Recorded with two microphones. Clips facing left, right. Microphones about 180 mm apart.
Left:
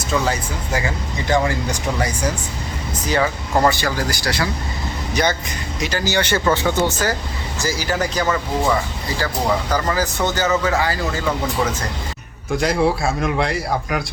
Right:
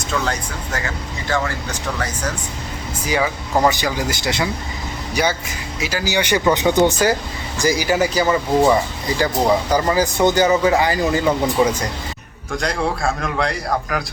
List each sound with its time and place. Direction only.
0.1 s speech: 5° left (ahead or behind)
1.3 s speech: 15° left (ahead or behind)
3.1 s speech: 10° right (ahead or behind)
5.1 s speech: 10° right (ahead or behind)
12.5 s a man's voice: 5° left (ahead or behind)